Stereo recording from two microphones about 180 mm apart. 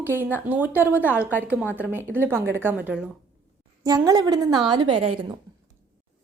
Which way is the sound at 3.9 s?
20° right (ahead or behind).